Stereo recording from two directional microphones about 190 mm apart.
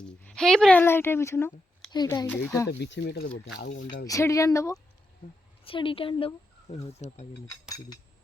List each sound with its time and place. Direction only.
0.0 s speech: 5° left (ahead or behind)
2.6 s speech: 65° left (ahead or behind)
3.2 s speech: 55° left (ahead or behind)
4.0 s speech: 15° left (ahead or behind)
5.6 s speech: 25° left (ahead or behind)